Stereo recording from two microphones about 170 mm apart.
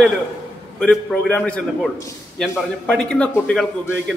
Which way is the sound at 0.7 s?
10° left (ahead or behind).